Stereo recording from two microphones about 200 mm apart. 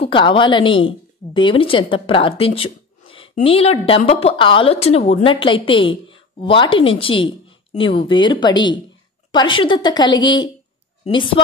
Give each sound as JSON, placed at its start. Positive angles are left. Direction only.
{"t": 0.0, "sound": "a woman's voice", "side_deg": 25}